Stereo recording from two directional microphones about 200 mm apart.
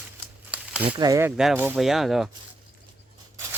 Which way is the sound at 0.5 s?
5° right (ahead or behind).